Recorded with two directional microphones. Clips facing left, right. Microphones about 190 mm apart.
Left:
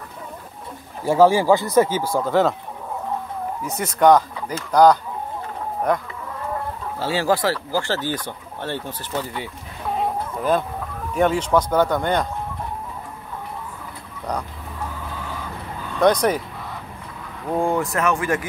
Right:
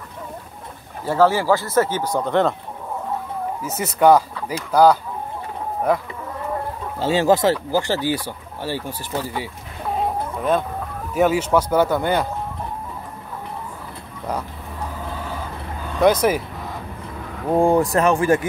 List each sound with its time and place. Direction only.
1.0 s speech: 10° left (ahead or behind)
3.6 s speech: 5° right (ahead or behind)
7.0 s speech: 20° right (ahead or behind)
11.1 s speech: 5° right (ahead or behind)
16.0 s speech: 5° right (ahead or behind)
17.5 s speech: 35° right (ahead or behind)